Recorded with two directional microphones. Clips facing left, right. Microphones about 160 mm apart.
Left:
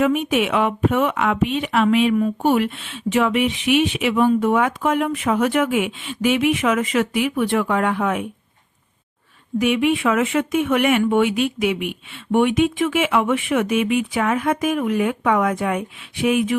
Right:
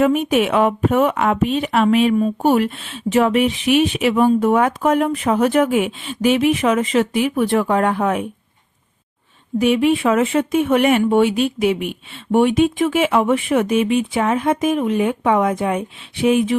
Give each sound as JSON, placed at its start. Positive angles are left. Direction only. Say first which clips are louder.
{"t": 0.0, "sound": "speech", "louder": "right 3 dB", "side_deg": -40}
{"t": 9.6, "sound": "speech", "louder": "right 3 dB", "side_deg": -35}